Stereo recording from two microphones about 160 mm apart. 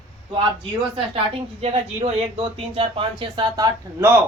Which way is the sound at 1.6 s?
40° right (ahead or behind).